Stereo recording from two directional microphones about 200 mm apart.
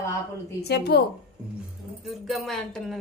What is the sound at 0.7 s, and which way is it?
Speech, 55° left (ahead or behind).